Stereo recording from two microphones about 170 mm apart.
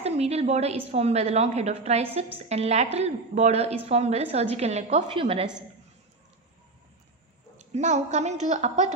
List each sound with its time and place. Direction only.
0.0 s a woman's voice: 40° right (ahead or behind)
7.7 s a woman's voice: 45° right (ahead or behind)